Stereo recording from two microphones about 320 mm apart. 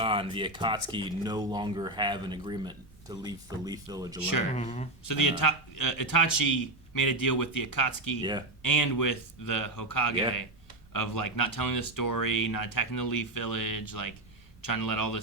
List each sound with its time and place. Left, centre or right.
0.0 s speech: centre
4.5 s speech: left
5.0 s a man's voice: left
8.2 s speech: centre
8.6 s a man's voice: left